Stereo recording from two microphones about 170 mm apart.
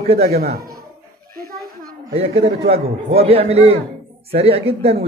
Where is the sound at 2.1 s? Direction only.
35° right (ahead or behind).